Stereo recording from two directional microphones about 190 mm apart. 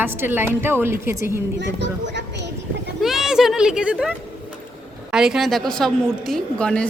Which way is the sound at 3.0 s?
Centre (ahead or behind).